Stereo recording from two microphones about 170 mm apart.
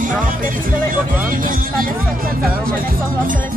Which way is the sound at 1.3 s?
55° right (ahead or behind).